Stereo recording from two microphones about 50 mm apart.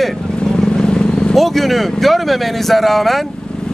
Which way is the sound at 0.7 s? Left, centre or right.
Centre.